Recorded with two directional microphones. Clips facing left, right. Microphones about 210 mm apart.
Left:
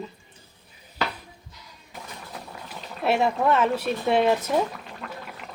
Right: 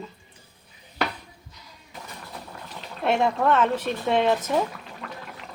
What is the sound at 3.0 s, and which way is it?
Speech, 5° left (ahead or behind).